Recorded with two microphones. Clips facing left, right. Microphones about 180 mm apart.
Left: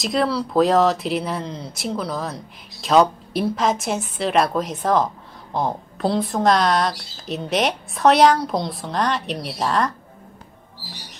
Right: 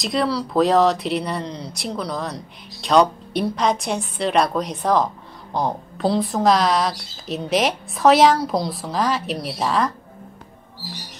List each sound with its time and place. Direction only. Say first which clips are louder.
0.0 s speech: left 1 dB; centre (ahead or behind)